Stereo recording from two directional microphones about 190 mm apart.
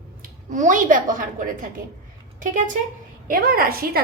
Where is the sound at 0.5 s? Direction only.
40° right (ahead or behind).